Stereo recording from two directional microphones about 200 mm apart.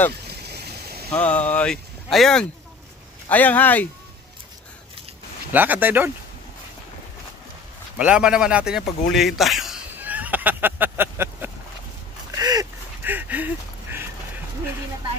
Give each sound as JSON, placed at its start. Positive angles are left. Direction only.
{"t": 0.3, "sound": "a sound", "side_deg": -55}
{"t": 1.1, "sound": "speech", "side_deg": 5}
{"t": 5.5, "sound": "speech", "side_deg": -10}
{"t": 8.0, "sound": "a man's voice", "side_deg": -5}
{"t": 12.4, "sound": "duck", "side_deg": -20}